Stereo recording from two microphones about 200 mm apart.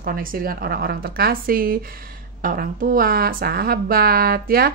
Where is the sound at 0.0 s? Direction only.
45° right (ahead or behind).